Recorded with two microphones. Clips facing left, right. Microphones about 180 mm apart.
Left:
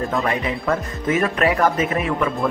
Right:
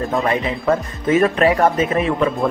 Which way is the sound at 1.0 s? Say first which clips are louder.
Right 5 dB; 30° right (ahead or behind).